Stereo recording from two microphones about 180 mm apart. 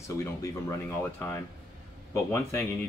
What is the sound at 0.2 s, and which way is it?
Speech, 15° left (ahead or behind).